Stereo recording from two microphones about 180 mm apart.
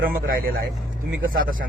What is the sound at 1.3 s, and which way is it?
Speech, 50° right (ahead or behind).